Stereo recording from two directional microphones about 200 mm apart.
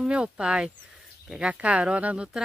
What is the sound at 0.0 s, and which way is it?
Speech, 5° right (ahead or behind).